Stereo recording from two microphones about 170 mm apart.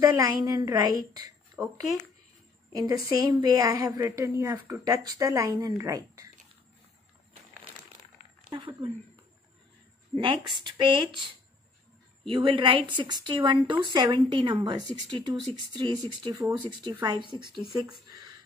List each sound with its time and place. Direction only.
0.0 s speech: 20° right (ahead or behind)
2.7 s speech: 20° right (ahead or behind)
8.5 s speech: 25° right (ahead or behind)
10.1 s a woman's voice: 30° right (ahead or behind)
12.3 s speech: 30° right (ahead or behind)